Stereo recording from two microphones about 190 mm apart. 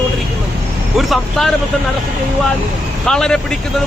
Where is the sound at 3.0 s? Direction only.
5° left (ahead or behind).